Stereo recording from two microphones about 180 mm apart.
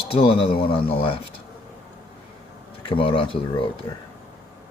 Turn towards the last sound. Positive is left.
turn(degrees=30)  # may be behind; listen again after turning